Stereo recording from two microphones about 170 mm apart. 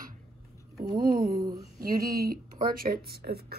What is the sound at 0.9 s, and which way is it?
Speech, 60° right (ahead or behind).